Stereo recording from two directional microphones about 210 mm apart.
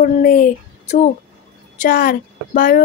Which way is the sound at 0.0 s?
40° left (ahead or behind).